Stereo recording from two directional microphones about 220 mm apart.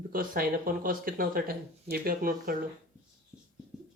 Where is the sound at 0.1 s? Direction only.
40° right (ahead or behind).